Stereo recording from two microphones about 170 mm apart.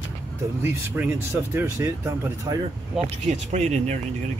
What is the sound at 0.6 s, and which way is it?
Speech, 15° right (ahead or behind).